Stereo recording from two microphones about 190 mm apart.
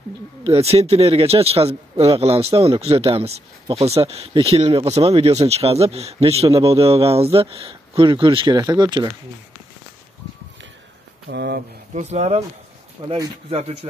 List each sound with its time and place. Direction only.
0.4 s speech: 30° right (ahead or behind)
11.2 s speech: 60° right (ahead or behind)
11.9 s speech: 35° right (ahead or behind)